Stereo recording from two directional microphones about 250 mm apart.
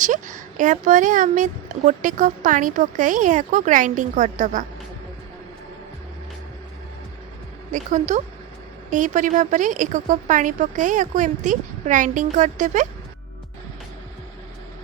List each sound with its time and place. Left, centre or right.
0.0 s speech: right
7.7 s a woman's voice: right